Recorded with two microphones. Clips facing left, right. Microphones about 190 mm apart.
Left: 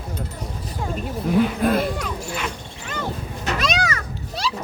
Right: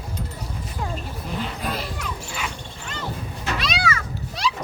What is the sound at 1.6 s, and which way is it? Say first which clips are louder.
Speech: left 10 dB; 50° left (ahead or behind).